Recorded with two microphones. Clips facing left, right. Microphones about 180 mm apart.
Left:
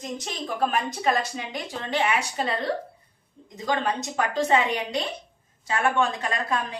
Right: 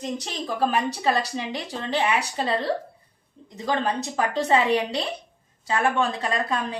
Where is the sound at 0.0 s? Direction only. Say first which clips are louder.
Right 2 dB; 35° right (ahead or behind).